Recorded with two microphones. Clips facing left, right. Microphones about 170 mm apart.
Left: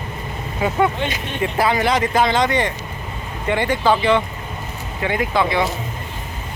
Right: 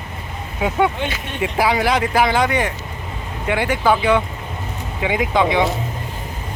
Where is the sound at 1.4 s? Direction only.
10° right (ahead or behind).